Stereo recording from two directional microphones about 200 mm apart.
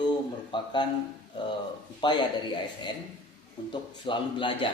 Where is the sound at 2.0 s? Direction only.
20° left (ahead or behind).